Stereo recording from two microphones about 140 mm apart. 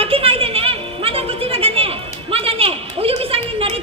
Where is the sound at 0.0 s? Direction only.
45° right (ahead or behind).